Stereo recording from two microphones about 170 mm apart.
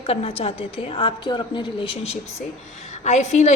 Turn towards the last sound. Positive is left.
turn(degrees=40)  # may be behind; listen again after turning